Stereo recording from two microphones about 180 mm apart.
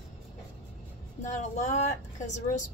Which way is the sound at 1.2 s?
40° left (ahead or behind).